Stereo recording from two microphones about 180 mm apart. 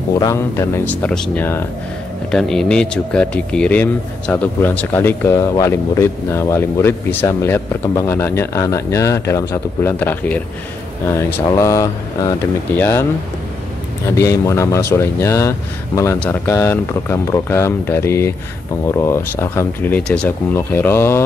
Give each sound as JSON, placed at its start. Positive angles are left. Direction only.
{"t": 0.2, "sound": "speech", "side_deg": 15}
{"t": 14.0, "sound": "speech", "side_deg": 15}